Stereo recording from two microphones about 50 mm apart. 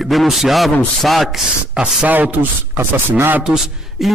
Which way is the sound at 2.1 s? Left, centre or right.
Right.